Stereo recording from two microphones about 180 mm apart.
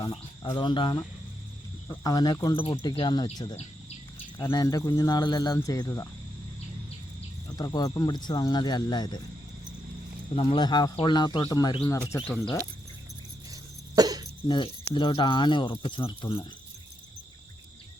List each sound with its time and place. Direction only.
0.0 s speech: 25° left (ahead or behind)
3.5 s bird: 35° left (ahead or behind)
4.4 s speech: 25° left (ahead or behind)
7.5 s speech: 20° left (ahead or behind)
10.3 s speech: 30° left (ahead or behind)
12.2 s speech: centre (ahead or behind)
13.5 s cough: 20° right (ahead or behind)
14.4 s speech: 25° left (ahead or behind)